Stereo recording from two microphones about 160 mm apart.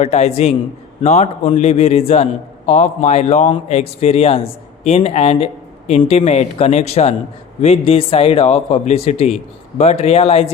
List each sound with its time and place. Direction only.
0.0 s a man's voice: 40° left (ahead or behind)